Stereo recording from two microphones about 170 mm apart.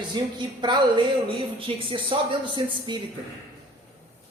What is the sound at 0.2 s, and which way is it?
Speech, 25° right (ahead or behind).